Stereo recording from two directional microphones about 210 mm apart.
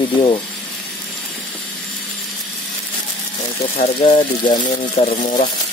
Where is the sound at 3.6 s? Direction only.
25° left (ahead or behind).